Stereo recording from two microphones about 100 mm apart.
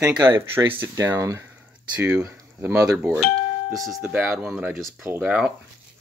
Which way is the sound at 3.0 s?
15° right (ahead or behind).